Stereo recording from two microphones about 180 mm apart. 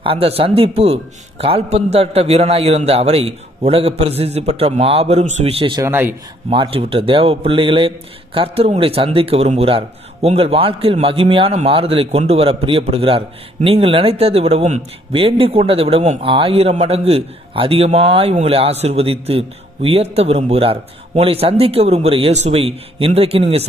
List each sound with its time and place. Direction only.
0.0 s speech: 30° right (ahead or behind)
5.8 s a man's voice: 10° right (ahead or behind)
6.5 s speech: 30° right (ahead or behind)